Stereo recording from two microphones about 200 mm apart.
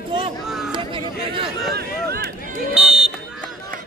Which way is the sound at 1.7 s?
55° right (ahead or behind).